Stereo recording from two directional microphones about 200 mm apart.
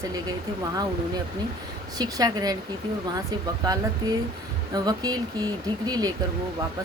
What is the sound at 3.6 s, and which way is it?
Speech, 20° right (ahead or behind).